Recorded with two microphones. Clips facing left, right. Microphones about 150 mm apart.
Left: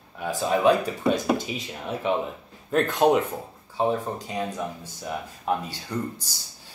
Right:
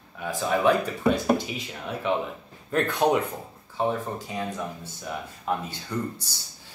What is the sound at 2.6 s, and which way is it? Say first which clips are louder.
Speech: left 3 dB; 20° left (ahead or behind).